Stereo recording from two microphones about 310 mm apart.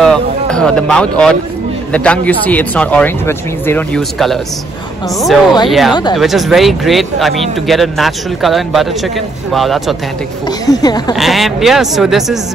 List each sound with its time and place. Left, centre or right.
0.0 s speech: centre
5.2 s speech: centre
5.7 s speech: centre
10.6 s speech: centre
11.1 s speech: centre